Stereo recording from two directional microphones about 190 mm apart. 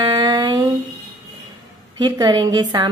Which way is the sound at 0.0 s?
25° right (ahead or behind).